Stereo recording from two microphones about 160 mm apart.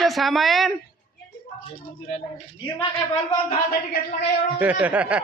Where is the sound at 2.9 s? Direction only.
35° left (ahead or behind).